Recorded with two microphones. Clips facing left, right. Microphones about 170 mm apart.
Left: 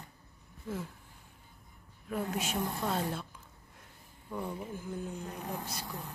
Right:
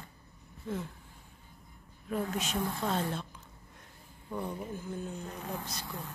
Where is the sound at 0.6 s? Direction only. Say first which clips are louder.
Right 2 dB; 5° left (ahead or behind).